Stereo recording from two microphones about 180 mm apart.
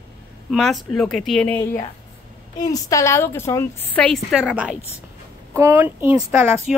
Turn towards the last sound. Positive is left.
turn(degrees=-10)  # may be behind; listen again after turning